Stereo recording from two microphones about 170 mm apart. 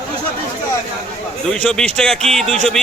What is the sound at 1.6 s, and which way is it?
Speech, 5° left (ahead or behind).